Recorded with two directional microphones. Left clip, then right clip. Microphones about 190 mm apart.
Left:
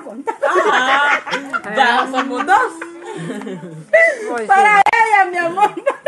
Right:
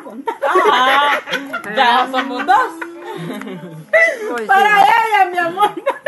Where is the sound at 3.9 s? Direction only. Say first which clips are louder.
Left 1 dB; 30° right (ahead or behind).